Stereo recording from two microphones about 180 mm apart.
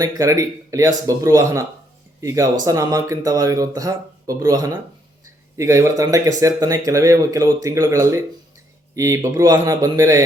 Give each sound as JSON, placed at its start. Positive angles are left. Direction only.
{"t": 0.0, "sound": "speech", "side_deg": -15}